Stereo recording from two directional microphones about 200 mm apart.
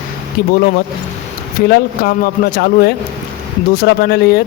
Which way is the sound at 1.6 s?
50° left (ahead or behind).